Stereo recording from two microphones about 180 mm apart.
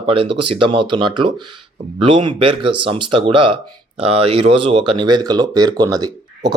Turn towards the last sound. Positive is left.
turn(degrees=-20)  # may be behind; listen again after turning